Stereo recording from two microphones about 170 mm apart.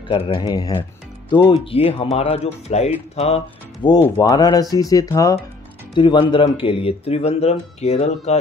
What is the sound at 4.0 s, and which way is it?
Speech, 20° left (ahead or behind).